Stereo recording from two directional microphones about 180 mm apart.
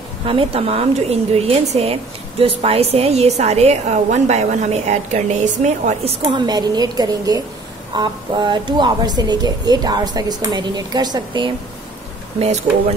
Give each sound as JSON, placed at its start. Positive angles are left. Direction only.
{"t": 0.3, "sound": "a woman's voice", "side_deg": -30}
{"t": 6.4, "sound": "a woman's voice", "side_deg": -20}